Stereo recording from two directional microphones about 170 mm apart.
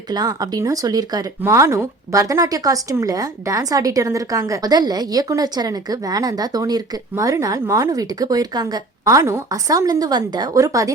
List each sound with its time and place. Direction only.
0.1 s speech: 25° right (ahead or behind)